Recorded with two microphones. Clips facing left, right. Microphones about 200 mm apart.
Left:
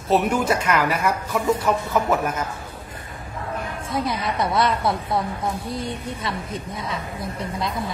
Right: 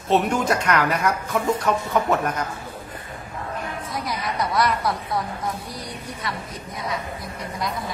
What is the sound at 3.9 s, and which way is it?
Speech, 25° left (ahead or behind).